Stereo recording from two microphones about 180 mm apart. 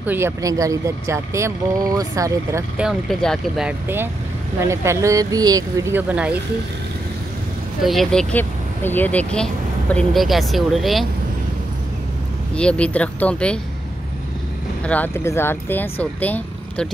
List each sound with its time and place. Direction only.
0.0 s speech: 10° right (ahead or behind)
2.8 s speech: centre (ahead or behind)
7.8 s speech: centre (ahead or behind)
12.5 s speech: 5° left (ahead or behind)
14.9 s speech: 10° left (ahead or behind)